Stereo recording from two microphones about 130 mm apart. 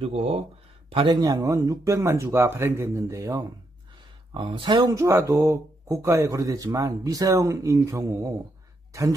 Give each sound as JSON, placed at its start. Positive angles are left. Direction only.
{"t": 0.0, "sound": "speech", "side_deg": -50}
{"t": 0.8, "sound": "a man's voice", "side_deg": -40}
{"t": 4.3, "sound": "speech", "side_deg": -35}
{"t": 4.9, "sound": "a man's voice", "side_deg": -20}